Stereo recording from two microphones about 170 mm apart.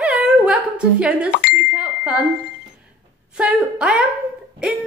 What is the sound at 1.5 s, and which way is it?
Speech, 5° right (ahead or behind).